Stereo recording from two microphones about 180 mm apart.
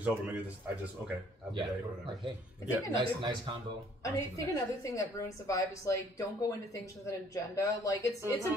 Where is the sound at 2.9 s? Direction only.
25° right (ahead or behind).